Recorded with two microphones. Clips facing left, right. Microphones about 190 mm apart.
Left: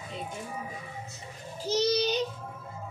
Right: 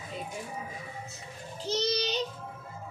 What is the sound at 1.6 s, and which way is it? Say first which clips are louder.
Speech: left 4 dB; 10° left (ahead or behind).